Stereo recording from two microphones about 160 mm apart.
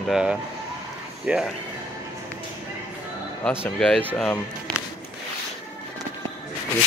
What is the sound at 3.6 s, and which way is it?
Speech, 5° left (ahead or behind).